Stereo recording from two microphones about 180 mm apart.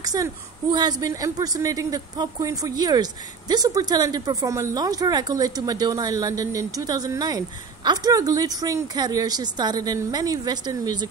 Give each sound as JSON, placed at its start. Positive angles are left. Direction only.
{"t": 0.0, "sound": "a woman's voice", "side_deg": -20}